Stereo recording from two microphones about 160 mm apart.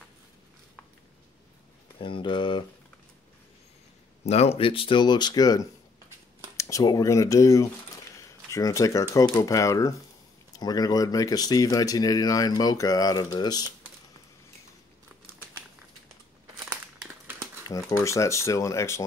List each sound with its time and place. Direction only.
2.0 s speech: 30° left (ahead or behind)
4.3 s speech: 40° left (ahead or behind); by 13.7 s 25° left (ahead or behind)
17.6 s speech: 20° left (ahead or behind)